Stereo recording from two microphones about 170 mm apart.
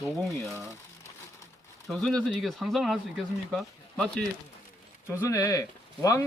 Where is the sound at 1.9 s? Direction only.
5° left (ahead or behind).